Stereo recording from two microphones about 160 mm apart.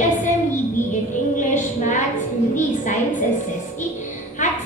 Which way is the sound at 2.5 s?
50° left (ahead or behind).